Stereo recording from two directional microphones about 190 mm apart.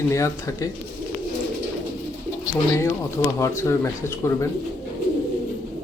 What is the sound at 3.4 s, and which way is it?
A man's voice, 15° left (ahead or behind).